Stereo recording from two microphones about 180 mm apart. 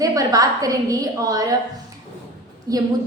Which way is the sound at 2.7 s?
20° right (ahead or behind).